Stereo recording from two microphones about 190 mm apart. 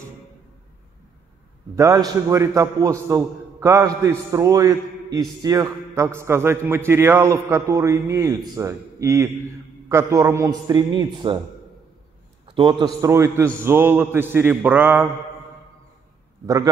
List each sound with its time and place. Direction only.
1.8 s a man's voice: 20° right (ahead or behind)
12.4 s a man's voice: 25° right (ahead or behind); by 15.0 s 10° right (ahead or behind)